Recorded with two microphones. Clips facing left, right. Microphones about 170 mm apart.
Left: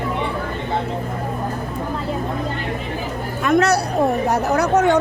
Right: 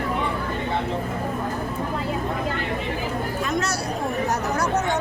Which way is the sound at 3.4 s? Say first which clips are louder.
Left 9 dB; 60° left (ahead or behind).